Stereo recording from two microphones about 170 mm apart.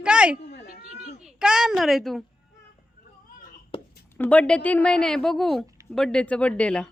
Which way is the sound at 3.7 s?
30° left (ahead or behind).